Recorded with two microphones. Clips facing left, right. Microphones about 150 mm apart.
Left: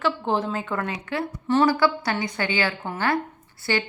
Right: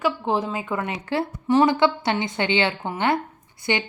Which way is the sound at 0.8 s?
25° right (ahead or behind).